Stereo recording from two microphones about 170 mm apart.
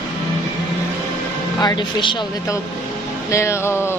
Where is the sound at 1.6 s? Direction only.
25° left (ahead or behind).